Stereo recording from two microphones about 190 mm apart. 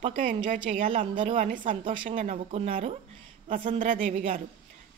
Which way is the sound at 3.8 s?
40° right (ahead or behind).